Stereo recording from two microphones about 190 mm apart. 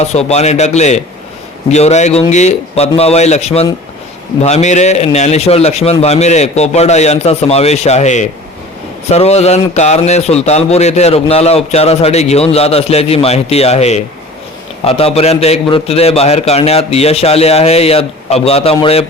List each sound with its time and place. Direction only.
0.0 s a man's voice: 35° left (ahead or behind)